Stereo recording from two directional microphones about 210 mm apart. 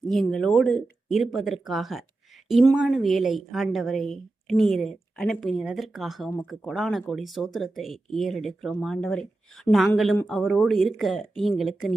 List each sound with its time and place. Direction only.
0.1 s a woman's voice: centre (ahead or behind)